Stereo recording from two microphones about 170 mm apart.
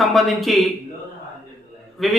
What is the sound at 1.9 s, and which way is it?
Speech, centre (ahead or behind).